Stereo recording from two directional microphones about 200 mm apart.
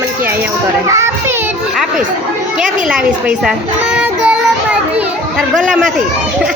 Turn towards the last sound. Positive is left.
turn(degrees=0)  # may be behind; listen again after turning